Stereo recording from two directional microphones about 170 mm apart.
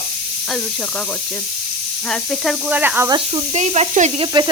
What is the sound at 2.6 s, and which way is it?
Speech, 10° right (ahead or behind).